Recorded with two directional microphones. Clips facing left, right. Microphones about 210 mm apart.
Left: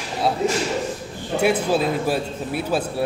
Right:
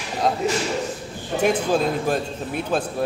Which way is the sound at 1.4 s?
5° left (ahead or behind).